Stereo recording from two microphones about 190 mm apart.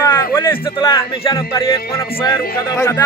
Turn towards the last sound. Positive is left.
turn(degrees=15)  # may be behind; listen again after turning